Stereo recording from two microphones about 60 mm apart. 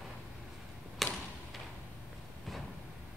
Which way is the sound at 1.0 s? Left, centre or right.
Centre.